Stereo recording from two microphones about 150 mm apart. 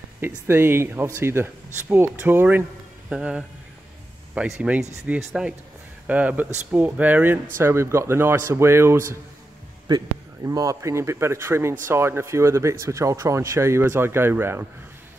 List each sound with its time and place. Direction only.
0.5 s speech: 15° right (ahead or behind)